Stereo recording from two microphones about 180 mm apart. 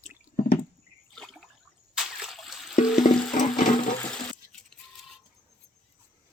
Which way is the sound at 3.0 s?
45° left (ahead or behind).